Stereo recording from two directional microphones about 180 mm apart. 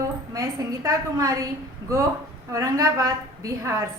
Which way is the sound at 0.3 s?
20° right (ahead or behind).